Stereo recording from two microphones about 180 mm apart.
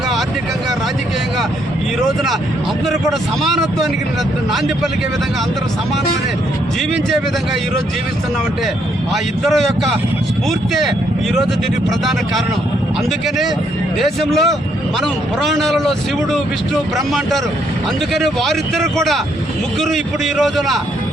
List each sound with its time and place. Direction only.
2.0 s speech: centre (ahead or behind)
9.4 s speech: centre (ahead or behind)
13.1 s speech: centre (ahead or behind)